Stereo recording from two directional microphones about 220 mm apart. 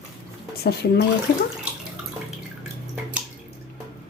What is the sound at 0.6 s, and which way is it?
Speech, 45° left (ahead or behind).